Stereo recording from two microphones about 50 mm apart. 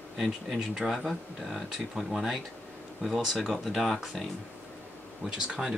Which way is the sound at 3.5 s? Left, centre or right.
Centre.